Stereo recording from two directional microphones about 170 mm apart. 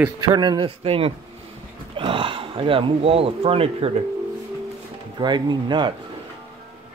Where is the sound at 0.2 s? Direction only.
25° right (ahead or behind).